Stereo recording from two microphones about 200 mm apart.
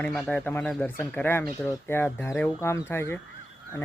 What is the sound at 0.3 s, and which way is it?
Speech, 10° left (ahead or behind).